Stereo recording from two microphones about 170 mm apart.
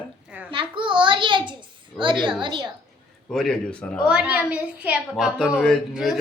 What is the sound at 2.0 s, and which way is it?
Speech, 30° right (ahead or behind).